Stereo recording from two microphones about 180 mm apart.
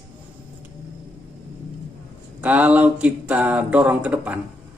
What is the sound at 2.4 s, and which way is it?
Speech, 10° right (ahead or behind).